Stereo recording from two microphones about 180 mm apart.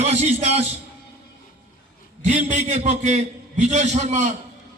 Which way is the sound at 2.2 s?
40° right (ahead or behind).